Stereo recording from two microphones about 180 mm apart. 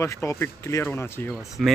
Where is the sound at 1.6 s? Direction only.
Centre (ahead or behind).